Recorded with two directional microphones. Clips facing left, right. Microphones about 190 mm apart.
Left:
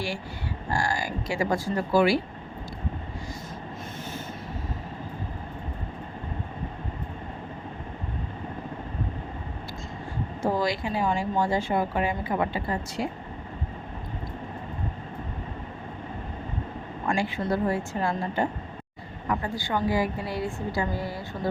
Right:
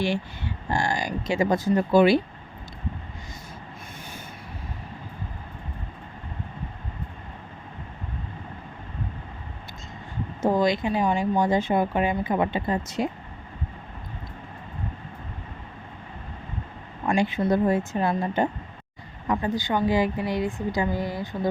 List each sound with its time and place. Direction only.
0.0 s speech: 20° right (ahead or behind)
10.4 s speech: 20° right (ahead or behind)
17.1 s speech: 20° right (ahead or behind)